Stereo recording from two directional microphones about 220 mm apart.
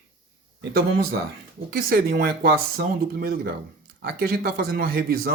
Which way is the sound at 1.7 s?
45° right (ahead or behind).